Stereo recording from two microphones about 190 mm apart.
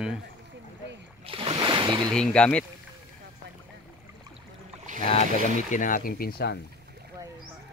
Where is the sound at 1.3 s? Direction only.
25° right (ahead or behind).